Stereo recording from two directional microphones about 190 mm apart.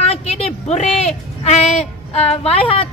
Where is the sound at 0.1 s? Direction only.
30° left (ahead or behind).